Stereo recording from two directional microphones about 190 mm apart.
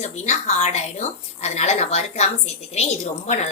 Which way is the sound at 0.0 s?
35° left (ahead or behind).